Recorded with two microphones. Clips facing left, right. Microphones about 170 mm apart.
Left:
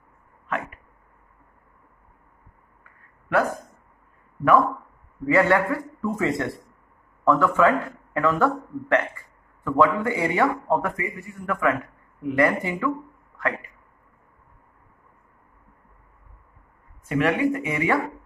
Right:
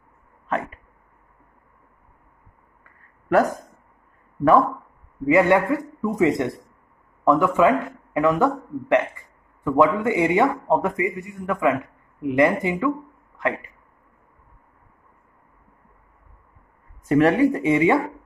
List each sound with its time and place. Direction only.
3.3 s speech: 45° right (ahead or behind)
5.2 s a man's voice: 15° right (ahead or behind)
17.0 s speech: 40° right (ahead or behind)